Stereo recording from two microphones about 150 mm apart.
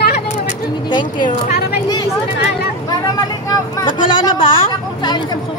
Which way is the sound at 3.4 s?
25° left (ahead or behind).